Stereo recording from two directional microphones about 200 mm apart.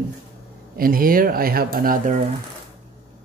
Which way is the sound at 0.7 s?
45° right (ahead or behind).